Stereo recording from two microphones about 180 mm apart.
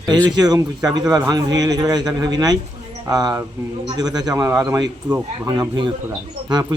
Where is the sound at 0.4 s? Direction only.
20° right (ahead or behind).